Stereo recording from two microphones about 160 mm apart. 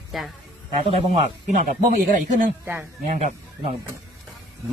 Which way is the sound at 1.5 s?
55° right (ahead or behind).